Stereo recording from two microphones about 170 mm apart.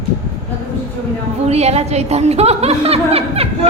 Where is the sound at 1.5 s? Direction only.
40° right (ahead or behind).